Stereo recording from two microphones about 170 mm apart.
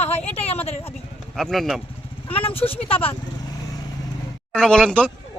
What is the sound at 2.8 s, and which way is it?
Vehicle, 35° left (ahead or behind).